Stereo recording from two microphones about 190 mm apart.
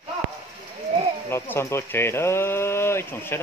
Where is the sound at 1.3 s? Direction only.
15° left (ahead or behind).